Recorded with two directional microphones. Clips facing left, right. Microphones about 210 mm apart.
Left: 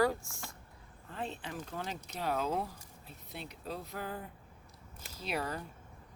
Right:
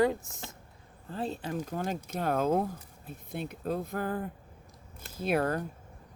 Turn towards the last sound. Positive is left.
turn(degrees=-55)  # may be behind; listen again after turning